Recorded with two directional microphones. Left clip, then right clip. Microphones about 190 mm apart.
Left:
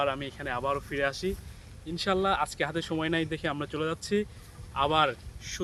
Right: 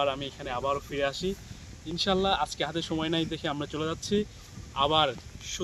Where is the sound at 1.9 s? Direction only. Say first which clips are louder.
Right 1 dB; 5° right (ahead or behind).